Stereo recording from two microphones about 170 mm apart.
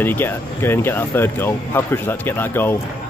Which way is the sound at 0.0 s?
10° left (ahead or behind).